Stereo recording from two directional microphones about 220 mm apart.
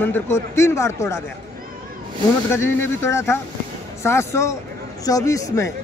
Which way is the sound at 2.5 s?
10° left (ahead or behind).